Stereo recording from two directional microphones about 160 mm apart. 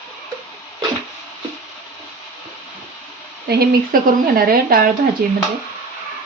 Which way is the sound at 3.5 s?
70° right (ahead or behind).